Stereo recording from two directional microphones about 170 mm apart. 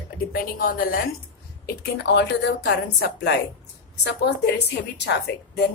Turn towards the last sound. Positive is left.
turn(degrees=85)